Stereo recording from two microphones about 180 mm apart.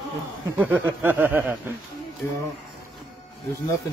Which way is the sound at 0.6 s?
10° right (ahead or behind).